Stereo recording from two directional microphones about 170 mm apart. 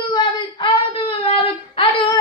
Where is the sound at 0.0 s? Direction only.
30° left (ahead or behind).